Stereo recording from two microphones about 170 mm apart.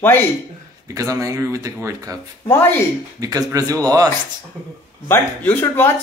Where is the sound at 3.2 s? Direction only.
20° right (ahead or behind).